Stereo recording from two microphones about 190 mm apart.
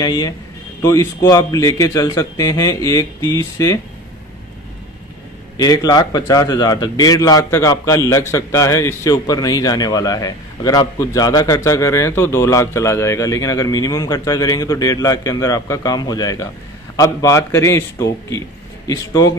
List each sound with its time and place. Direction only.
0.0 s a man's voice: 20° left (ahead or behind)
5.6 s a man's voice: 20° left (ahead or behind)